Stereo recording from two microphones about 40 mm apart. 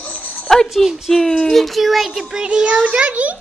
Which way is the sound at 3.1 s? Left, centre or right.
Right.